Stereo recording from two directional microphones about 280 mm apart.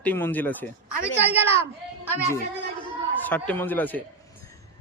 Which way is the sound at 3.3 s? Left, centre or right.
Centre.